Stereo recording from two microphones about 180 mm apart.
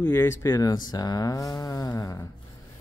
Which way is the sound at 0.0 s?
10° left (ahead or behind).